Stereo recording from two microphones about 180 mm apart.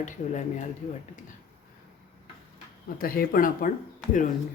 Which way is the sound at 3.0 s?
55° left (ahead or behind).